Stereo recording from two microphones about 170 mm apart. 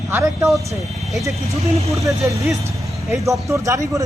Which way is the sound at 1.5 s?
35° right (ahead or behind).